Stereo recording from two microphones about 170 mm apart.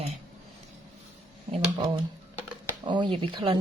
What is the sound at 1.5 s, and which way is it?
A woman's voice, 30° right (ahead or behind).